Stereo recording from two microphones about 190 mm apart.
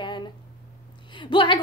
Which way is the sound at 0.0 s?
25° left (ahead or behind).